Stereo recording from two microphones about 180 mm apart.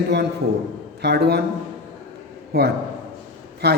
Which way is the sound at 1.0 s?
65° right (ahead or behind).